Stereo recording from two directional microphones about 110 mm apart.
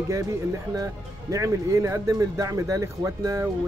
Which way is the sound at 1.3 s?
30° right (ahead or behind).